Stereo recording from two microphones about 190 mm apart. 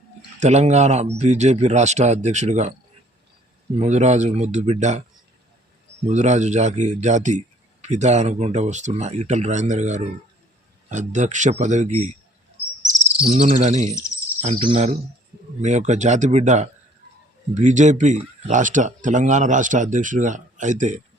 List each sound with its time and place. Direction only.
0.3 s a man's voice: 35° right (ahead or behind)
3.8 s a man's voice: 35° right (ahead or behind)
6.1 s a man's voice: 35° right (ahead or behind)
13.2 s a man's voice: 30° right (ahead or behind)